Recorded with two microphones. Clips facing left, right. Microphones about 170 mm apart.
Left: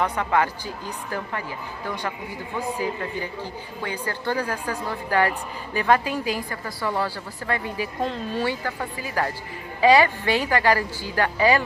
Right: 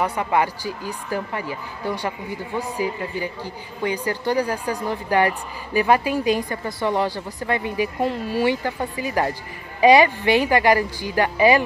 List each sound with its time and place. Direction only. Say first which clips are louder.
0.0 s speech: right 1 dB; 10° right (ahead or behind)
3.8 s speech: right 5 dB; 15° right (ahead or behind)